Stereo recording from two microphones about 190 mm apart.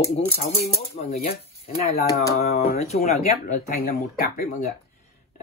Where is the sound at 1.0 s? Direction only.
35° left (ahead or behind).